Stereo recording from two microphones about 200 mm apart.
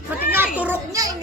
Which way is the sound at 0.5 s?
10° right (ahead or behind).